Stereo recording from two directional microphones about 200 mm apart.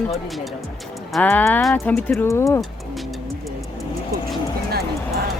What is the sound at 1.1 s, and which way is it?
Speech, 10° left (ahead or behind).